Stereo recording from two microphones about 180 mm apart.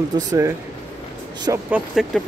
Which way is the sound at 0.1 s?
20° right (ahead or behind).